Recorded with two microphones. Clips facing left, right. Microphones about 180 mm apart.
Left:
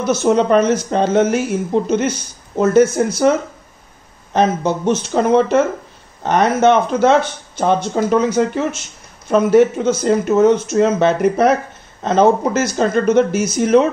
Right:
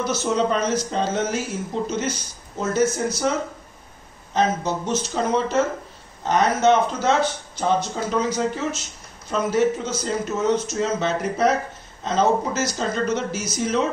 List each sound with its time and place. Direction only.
0.0 s speech: 55° left (ahead or behind)
4.3 s speech: 60° left (ahead or behind)